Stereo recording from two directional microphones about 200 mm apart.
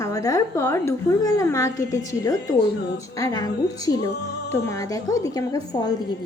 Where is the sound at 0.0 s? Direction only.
15° left (ahead or behind).